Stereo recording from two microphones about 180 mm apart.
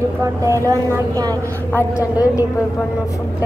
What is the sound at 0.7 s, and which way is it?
Speech, 20° right (ahead or behind).